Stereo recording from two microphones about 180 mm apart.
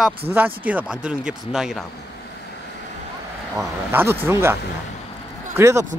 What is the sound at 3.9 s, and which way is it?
Speech, 10° right (ahead or behind).